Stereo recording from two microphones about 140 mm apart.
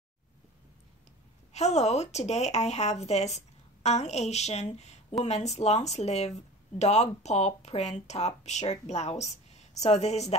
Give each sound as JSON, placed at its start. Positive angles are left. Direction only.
{"t": 1.5, "sound": "a woman's voice", "side_deg": 50}